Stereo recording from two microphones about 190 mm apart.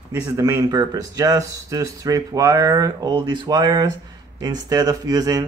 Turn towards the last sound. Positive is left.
turn(degrees=-20)  # may be behind; listen again after turning